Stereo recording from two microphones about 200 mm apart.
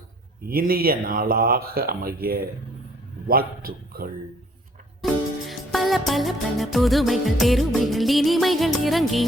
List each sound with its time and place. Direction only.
0.4 s speech: 45° right (ahead or behind)
5.0 s music: centre (ahead or behind)